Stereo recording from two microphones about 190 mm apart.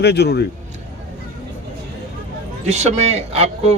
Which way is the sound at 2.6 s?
35° right (ahead or behind).